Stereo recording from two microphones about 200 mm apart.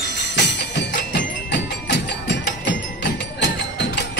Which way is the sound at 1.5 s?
60° left (ahead or behind).